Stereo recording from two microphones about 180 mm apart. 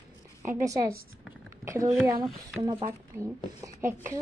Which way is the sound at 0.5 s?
15° right (ahead or behind).